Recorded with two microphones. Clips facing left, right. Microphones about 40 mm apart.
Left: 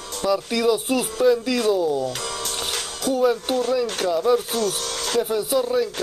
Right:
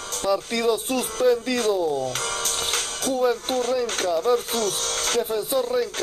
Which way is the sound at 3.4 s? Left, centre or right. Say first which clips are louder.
Left 2 dB; left.